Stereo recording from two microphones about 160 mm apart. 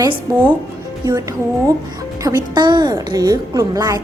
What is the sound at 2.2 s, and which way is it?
A woman's voice, 25° right (ahead or behind).